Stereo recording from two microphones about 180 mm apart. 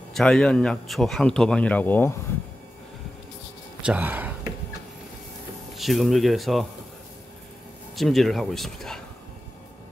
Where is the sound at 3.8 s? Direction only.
10° right (ahead or behind).